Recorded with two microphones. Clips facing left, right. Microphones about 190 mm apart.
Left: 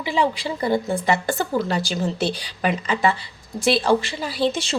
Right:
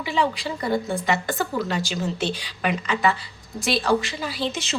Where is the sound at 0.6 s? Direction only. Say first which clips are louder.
Left 3 dB; 30° left (ahead or behind).